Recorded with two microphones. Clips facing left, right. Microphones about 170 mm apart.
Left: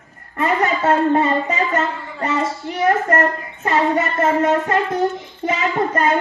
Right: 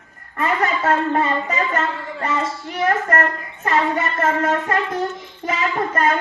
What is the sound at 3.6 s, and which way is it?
A child's voice, 30° left (ahead or behind).